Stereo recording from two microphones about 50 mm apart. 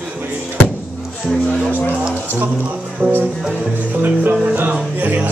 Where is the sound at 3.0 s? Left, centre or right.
Right.